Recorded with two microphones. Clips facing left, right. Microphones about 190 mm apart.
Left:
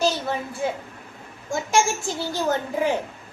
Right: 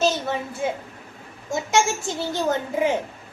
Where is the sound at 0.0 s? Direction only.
20° right (ahead or behind).